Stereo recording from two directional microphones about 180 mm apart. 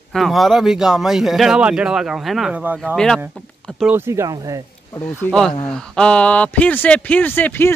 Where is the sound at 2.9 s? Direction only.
5° left (ahead or behind).